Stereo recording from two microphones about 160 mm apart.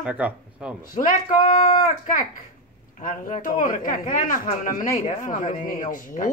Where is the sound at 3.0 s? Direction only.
55° left (ahead or behind).